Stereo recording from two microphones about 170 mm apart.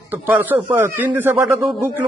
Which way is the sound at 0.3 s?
10° right (ahead or behind).